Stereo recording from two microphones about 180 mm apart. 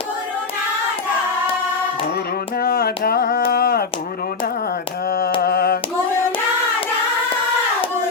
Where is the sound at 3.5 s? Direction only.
55° left (ahead or behind).